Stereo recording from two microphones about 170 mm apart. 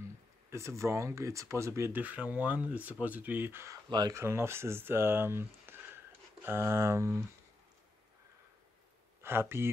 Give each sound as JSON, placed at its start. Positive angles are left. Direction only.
{"t": 0.5, "sound": "speech", "side_deg": -15}
{"t": 9.2, "sound": "speech", "side_deg": -15}